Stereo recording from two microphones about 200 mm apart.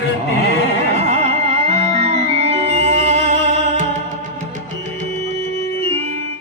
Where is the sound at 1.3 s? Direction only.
35° right (ahead or behind).